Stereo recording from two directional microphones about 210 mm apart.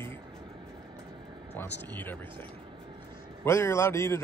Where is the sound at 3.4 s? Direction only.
15° left (ahead or behind).